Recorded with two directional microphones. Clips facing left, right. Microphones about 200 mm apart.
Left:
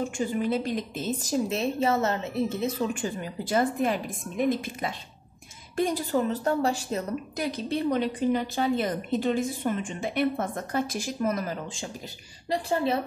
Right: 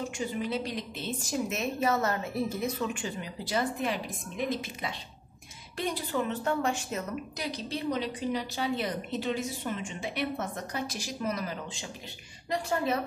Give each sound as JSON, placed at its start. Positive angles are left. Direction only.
{"t": 0.0, "sound": "a woman's voice", "side_deg": 50}
{"t": 1.3, "sound": "a woman's voice", "side_deg": 30}
{"t": 2.9, "sound": "a woman's voice", "side_deg": 45}
{"t": 7.3, "sound": "a woman's voice", "side_deg": 55}
{"t": 12.4, "sound": "a woman's voice", "side_deg": 30}